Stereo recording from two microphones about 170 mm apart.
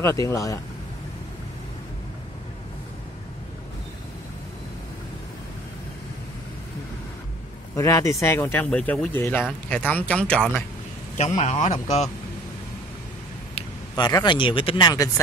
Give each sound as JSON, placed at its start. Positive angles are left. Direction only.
{"t": 0.0, "sound": "speech", "side_deg": 20}
{"t": 7.7, "sound": "speech", "side_deg": 15}
{"t": 11.1, "sound": "a man's voice", "side_deg": 40}
{"t": 13.6, "sound": "speech", "side_deg": 25}